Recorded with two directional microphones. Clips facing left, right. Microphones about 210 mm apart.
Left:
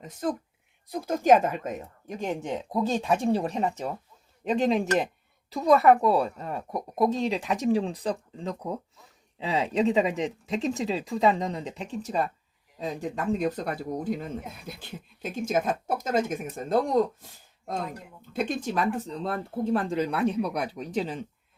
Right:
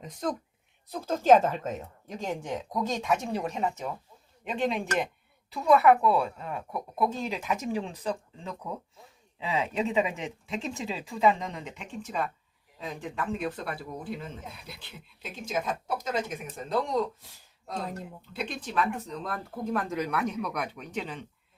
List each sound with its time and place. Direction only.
0.0 s speech: 5° left (ahead or behind); by 21.2 s 35° left (ahead or behind)